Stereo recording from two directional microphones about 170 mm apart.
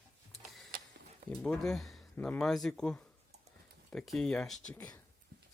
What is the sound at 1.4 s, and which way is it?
Speech, 5° left (ahead or behind).